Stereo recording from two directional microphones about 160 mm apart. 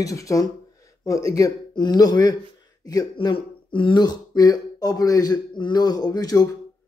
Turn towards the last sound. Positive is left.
turn(degrees=25)  # may be behind; listen again after turning